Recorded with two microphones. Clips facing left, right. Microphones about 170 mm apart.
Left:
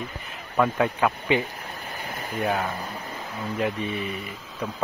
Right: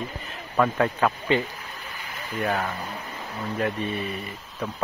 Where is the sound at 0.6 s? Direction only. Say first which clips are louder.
Even; 5° left (ahead or behind).